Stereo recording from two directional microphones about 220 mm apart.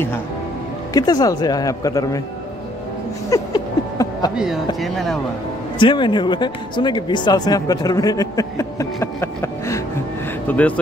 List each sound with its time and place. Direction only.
0.9 s speech: 15° left (ahead or behind)
3.3 s a sound: 15° left (ahead or behind)
4.7 s speech: centre (ahead or behind)
5.8 s speech: 20° left (ahead or behind)